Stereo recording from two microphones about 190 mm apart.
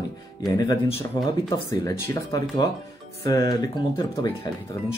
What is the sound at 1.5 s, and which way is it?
Speech, 20° left (ahead or behind).